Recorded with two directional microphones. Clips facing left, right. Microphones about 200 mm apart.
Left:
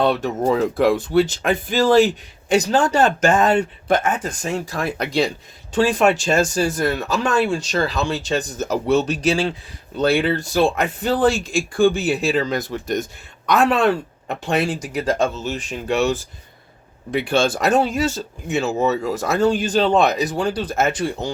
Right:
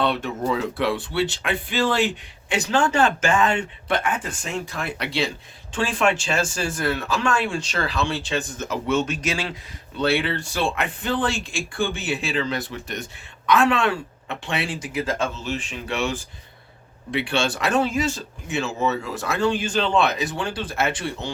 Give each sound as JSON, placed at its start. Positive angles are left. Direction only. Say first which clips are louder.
{"t": 0.0, "sound": "speech", "louder": "left 5 dB", "side_deg": 40}